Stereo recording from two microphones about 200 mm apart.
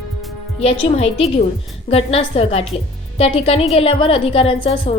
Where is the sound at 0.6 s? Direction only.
30° left (ahead or behind).